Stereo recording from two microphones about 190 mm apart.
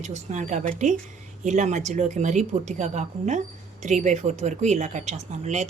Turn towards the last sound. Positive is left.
turn(degrees=-35)  # may be behind; listen again after turning